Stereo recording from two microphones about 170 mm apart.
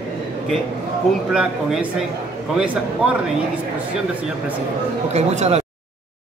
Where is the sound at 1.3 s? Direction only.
5° right (ahead or behind).